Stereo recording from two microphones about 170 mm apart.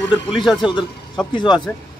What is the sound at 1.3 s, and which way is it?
Speech, 25° left (ahead or behind).